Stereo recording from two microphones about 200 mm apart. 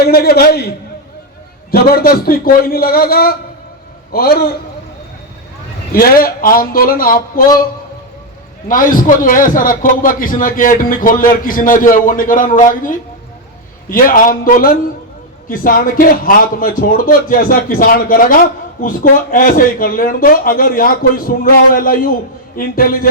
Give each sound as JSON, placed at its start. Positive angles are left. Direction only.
{"t": 0.0, "sound": "a man's voice", "side_deg": 50}
{"t": 1.7, "sound": "a man's voice", "side_deg": 50}
{"t": 5.9, "sound": "a man's voice", "side_deg": 45}
{"t": 8.6, "sound": "a man's voice", "side_deg": 45}